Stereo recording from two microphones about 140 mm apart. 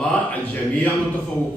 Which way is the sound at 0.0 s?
10° left (ahead or behind).